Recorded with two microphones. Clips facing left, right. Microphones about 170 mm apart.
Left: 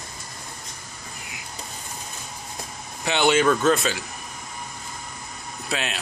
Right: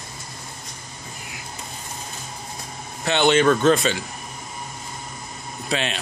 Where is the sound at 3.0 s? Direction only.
10° left (ahead or behind).